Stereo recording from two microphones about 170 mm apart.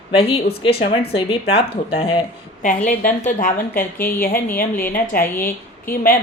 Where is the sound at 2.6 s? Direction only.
50° left (ahead or behind).